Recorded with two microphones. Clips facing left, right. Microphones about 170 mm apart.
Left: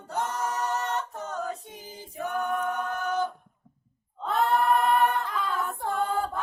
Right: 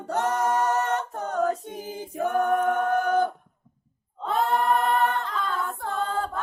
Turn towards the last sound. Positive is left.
turn(degrees=10)  # may be behind; listen again after turning